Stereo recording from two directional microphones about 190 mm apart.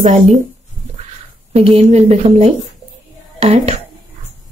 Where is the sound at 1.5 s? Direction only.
30° right (ahead or behind).